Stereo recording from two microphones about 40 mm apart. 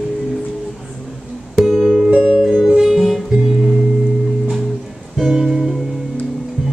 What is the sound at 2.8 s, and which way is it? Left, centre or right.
Music, centre.